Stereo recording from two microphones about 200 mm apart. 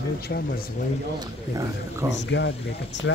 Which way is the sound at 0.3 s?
55° left (ahead or behind).